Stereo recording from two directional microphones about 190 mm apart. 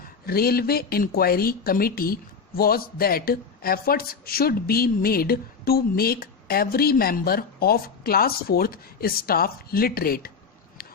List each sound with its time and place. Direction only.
0.0 s speech: 50° left (ahead or behind)